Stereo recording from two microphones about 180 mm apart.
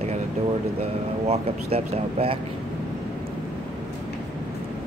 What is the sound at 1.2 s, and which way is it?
Speech, 35° right (ahead or behind).